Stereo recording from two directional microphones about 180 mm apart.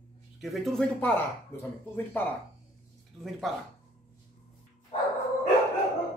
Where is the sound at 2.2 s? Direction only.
10° left (ahead or behind).